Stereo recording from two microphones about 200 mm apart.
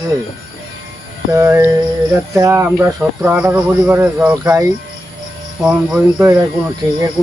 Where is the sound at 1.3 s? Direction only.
15° right (ahead or behind).